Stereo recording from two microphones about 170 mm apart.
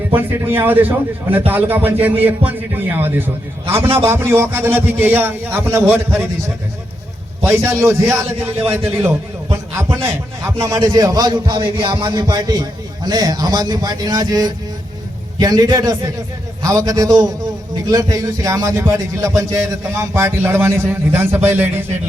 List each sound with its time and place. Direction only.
0.2 s a man's voice: 10° right (ahead or behind)
7.4 s a man's voice: 15° right (ahead or behind)